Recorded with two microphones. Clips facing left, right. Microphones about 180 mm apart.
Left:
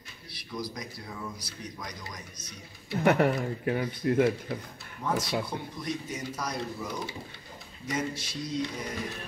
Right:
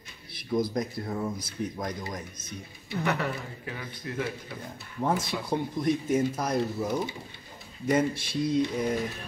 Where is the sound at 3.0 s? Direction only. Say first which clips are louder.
Left 7 dB; 50° left (ahead or behind).